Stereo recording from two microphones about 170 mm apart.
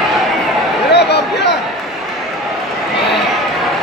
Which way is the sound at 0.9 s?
80° left.